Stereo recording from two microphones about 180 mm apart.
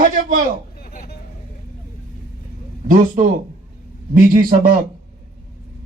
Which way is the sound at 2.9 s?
50° right (ahead or behind).